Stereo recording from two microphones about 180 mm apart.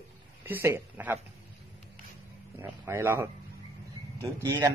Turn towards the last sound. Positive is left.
turn(degrees=-15)  # may be behind; listen again after turning